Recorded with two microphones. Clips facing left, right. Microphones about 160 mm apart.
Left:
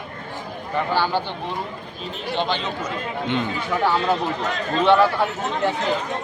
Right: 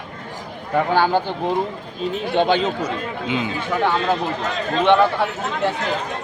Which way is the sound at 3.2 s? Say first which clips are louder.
Even; 5° right (ahead or behind).